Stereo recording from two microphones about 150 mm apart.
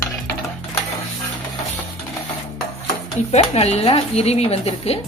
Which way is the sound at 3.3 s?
45° left (ahead or behind).